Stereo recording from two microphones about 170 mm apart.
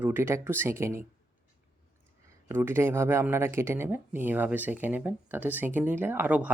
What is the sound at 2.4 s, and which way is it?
Speech, 15° right (ahead or behind).